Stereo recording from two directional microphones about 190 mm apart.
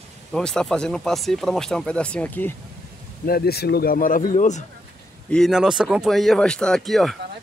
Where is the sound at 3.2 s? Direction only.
55° left (ahead or behind); by 4.6 s 40° left (ahead or behind).